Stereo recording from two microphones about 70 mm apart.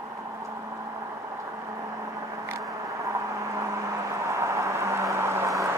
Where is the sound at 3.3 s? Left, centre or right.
Right.